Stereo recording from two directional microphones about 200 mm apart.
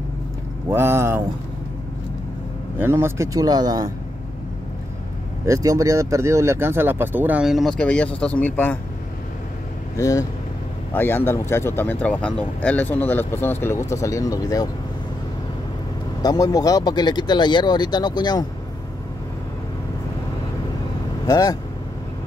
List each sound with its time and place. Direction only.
0.7 s speech: 10° right (ahead or behind)
2.8 s speech: 10° right (ahead or behind)
5.4 s speech: 15° right (ahead or behind); by 8.7 s 10° left (ahead or behind)
9.9 s speech: 15° left (ahead or behind)
16.2 s speech: 20° left (ahead or behind)
21.3 s speech: 20° left (ahead or behind)